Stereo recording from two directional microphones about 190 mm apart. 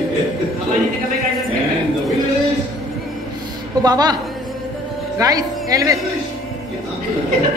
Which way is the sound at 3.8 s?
20° right (ahead or behind).